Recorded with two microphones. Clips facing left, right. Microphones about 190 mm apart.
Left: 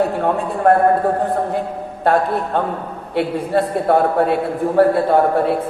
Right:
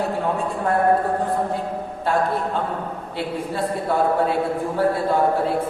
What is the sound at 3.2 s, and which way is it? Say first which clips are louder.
A man's voice: left 8 dB; 60° left (ahead or behind).